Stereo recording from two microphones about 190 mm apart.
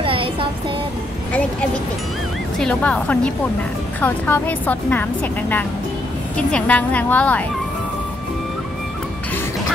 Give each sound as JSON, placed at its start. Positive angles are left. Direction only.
{"t": 0.0, "sound": "a sound", "side_deg": -30}
{"t": 2.6, "sound": "a woman's voice", "side_deg": 5}
{"t": 6.3, "sound": "a woman's voice", "side_deg": 5}